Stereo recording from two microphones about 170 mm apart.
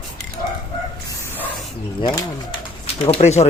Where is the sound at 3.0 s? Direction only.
40° left (ahead or behind).